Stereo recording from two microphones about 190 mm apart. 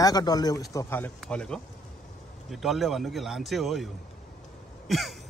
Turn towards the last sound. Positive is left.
turn(degrees=0)  # may be behind; listen again after turning